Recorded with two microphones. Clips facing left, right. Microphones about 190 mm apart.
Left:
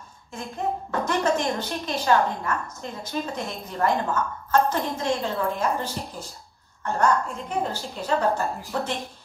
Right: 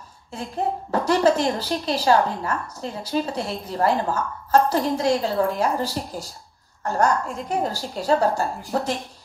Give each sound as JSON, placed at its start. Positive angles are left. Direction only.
{"t": 0.4, "sound": "a woman's voice", "side_deg": -35}